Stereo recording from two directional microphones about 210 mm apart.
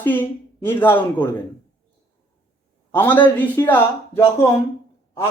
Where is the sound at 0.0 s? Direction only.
10° left (ahead or behind).